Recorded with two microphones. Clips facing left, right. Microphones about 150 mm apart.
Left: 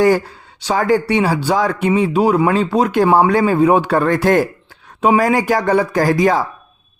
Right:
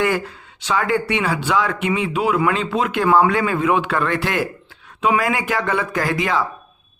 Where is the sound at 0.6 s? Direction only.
40° left (ahead or behind).